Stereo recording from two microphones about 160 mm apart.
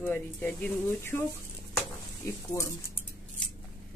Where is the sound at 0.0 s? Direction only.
10° left (ahead or behind).